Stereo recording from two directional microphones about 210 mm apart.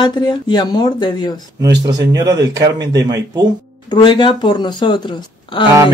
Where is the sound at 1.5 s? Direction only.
20° right (ahead or behind).